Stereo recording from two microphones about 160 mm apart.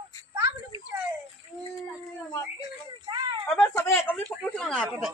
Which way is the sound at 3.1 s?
25° right (ahead or behind).